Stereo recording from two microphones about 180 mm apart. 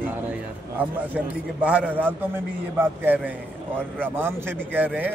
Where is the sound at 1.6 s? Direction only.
5° right (ahead or behind).